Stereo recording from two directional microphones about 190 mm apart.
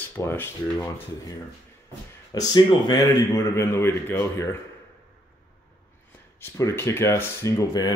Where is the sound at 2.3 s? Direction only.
20° left (ahead or behind).